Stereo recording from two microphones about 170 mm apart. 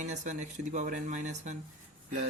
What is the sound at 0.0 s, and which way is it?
Speech, 45° right (ahead or behind).